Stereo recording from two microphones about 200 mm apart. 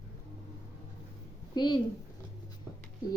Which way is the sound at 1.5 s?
20° left (ahead or behind).